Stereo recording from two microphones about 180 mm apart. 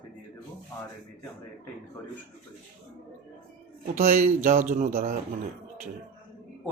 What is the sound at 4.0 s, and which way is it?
Speech, 45° right (ahead or behind).